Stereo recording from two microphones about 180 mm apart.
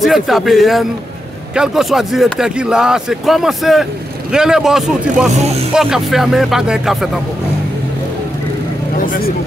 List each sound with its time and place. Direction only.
0.0 s speech: centre (ahead or behind)
9.0 s speech: 50° left (ahead or behind)